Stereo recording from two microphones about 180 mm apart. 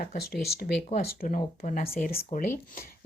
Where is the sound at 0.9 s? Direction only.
40° left (ahead or behind).